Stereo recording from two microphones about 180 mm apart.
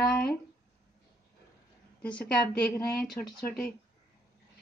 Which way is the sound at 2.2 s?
10° left (ahead or behind).